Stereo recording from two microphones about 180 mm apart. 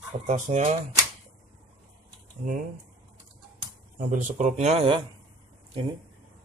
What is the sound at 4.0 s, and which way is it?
Speech, 45° right (ahead or behind).